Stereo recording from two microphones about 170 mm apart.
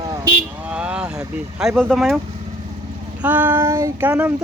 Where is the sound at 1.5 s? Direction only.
5° right (ahead or behind).